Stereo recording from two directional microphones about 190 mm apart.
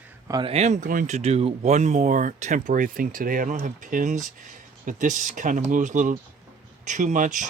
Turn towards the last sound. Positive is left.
turn(degrees=-45)  # may be behind; listen again after turning